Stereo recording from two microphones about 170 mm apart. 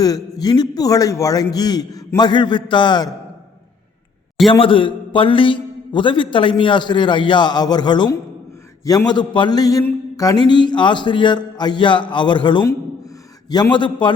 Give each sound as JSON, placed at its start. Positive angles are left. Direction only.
{"t": 0.0, "sound": "a man's voice", "side_deg": 20}
{"t": 4.6, "sound": "a man's voice", "side_deg": 30}